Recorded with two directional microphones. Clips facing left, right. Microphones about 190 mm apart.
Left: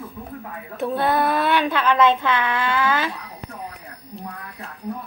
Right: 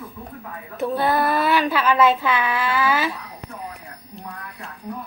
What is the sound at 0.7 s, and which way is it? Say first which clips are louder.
Speech: even; centre (ahead or behind).